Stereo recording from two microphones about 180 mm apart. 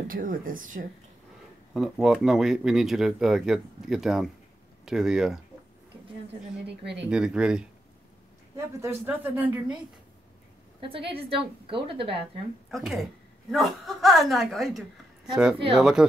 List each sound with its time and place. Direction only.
0.1 s speech: 50° right (ahead or behind)
1.7 s speech: centre (ahead or behind)
6.7 s speech: 70° right (ahead or behind)
7.1 s speech: 5° right (ahead or behind)
11.1 s a woman's voice: 30° right (ahead or behind)
12.7 s speech: centre (ahead or behind)